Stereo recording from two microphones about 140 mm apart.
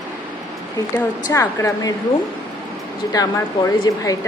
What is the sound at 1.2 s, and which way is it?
Speech, 25° left (ahead or behind).